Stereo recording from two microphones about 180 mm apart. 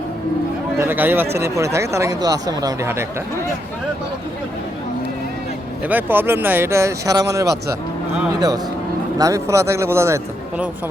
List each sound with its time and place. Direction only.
0.8 s speech: 10° right (ahead or behind)
5.9 s speech: 10° right (ahead or behind)
9.1 s speech: 20° right (ahead or behind)